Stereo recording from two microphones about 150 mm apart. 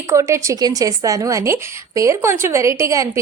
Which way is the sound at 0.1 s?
20° right (ahead or behind).